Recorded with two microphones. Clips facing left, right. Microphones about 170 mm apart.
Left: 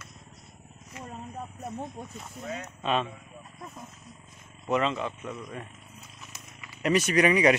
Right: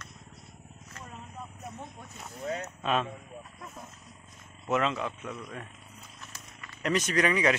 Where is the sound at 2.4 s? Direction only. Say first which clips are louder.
Right 3 dB; 35° right (ahead or behind).